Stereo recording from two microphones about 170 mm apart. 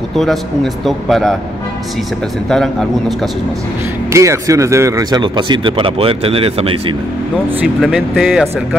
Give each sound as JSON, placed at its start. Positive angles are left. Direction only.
{"t": 0.8, "sound": "speech", "side_deg": 0}
{"t": 2.5, "sound": "speech", "side_deg": 0}
{"t": 4.1, "sound": "speech", "side_deg": -15}
{"t": 7.6, "sound": "speech", "side_deg": -5}